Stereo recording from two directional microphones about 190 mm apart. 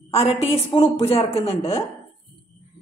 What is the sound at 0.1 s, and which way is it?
A woman's voice, 30° left (ahead or behind).